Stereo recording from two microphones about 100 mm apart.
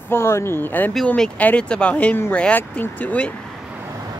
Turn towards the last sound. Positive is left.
turn(degrees=15)  # may be behind; listen again after turning